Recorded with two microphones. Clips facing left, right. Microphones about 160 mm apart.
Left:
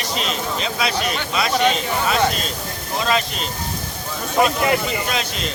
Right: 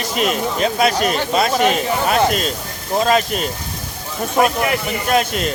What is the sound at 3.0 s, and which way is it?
Speech, 50° right (ahead or behind).